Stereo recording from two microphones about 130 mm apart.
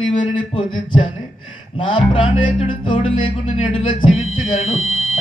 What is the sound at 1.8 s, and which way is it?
Music, 40° left (ahead or behind).